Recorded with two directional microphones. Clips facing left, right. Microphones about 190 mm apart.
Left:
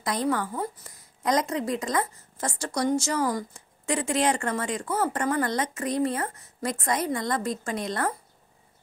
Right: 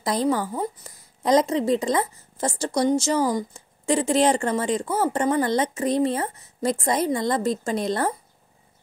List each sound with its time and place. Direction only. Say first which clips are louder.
0.0 s a woman's voice: right 4 dB; 30° right (ahead or behind)